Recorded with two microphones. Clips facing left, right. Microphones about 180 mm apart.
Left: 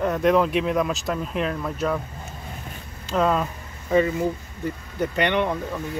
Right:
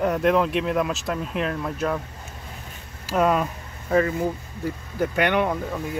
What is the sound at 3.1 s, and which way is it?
Speech, 10° right (ahead or behind).